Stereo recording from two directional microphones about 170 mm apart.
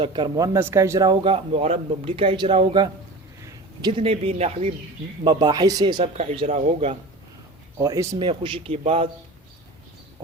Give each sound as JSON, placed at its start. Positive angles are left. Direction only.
{"t": 0.0, "sound": "a man's voice", "side_deg": -25}
{"t": 5.2, "sound": "a man's voice", "side_deg": -25}
{"t": 6.1, "sound": "speech", "side_deg": -35}
{"t": 7.8, "sound": "a man's voice", "side_deg": -20}
{"t": 8.3, "sound": "speech", "side_deg": -30}